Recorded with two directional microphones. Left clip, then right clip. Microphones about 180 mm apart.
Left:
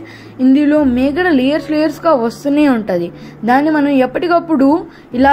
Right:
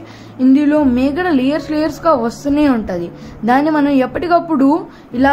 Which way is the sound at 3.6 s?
Centre (ahead or behind).